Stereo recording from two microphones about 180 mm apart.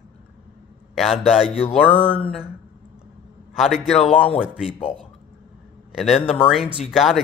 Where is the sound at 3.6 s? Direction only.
Centre (ahead or behind).